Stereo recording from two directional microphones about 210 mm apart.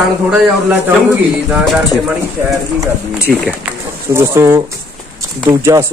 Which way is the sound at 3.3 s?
Centre (ahead or behind).